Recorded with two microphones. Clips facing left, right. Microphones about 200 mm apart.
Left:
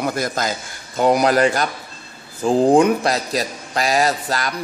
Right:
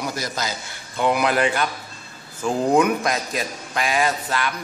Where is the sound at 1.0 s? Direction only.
40° left (ahead or behind).